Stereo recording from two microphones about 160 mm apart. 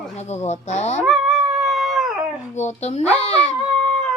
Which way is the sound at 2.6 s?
45° left (ahead or behind).